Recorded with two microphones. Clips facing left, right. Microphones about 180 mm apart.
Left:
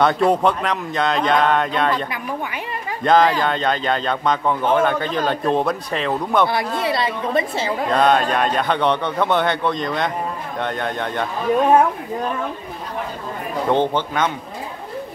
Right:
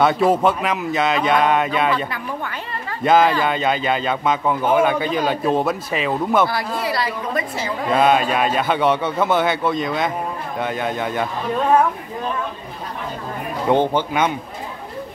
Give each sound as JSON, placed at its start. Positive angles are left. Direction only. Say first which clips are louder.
{"t": 0.0, "sound": "speech", "louder": "even", "side_deg": -5}
{"t": 6.8, "sound": "a woman's voice", "louder": "left 2 dB", "side_deg": 25}
{"t": 7.9, "sound": "speech", "louder": "right 1 dB", "side_deg": -5}
{"t": 13.7, "sound": "speech", "louder": "right 2 dB", "side_deg": -10}